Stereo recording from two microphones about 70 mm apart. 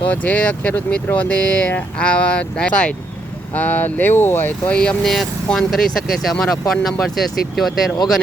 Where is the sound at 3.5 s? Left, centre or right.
Left.